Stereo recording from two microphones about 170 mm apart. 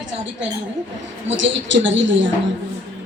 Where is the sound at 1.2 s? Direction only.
90° right.